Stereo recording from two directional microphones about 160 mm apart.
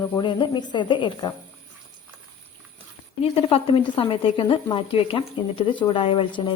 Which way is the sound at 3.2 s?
35° left (ahead or behind).